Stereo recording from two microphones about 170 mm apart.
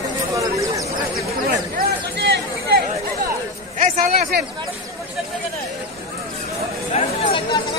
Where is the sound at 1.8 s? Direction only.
70° right (ahead or behind).